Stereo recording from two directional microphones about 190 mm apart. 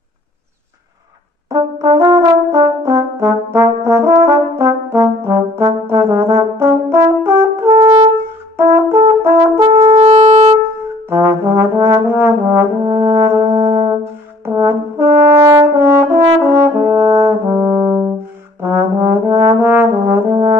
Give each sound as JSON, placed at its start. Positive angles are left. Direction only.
{"t": 1.5, "sound": "brass instrument", "side_deg": -15}
{"t": 9.4, "sound": "brass instrument", "side_deg": -30}
{"t": 11.1, "sound": "brass instrument", "side_deg": -15}
{"t": 18.6, "sound": "trombone", "side_deg": -15}